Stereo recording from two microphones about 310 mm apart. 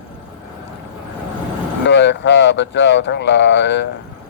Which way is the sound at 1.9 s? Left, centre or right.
Left.